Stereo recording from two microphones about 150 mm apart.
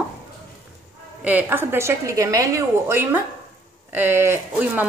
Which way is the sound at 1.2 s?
10° right (ahead or behind).